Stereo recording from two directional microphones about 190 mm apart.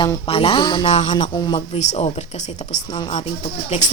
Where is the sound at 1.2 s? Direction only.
25° left (ahead or behind).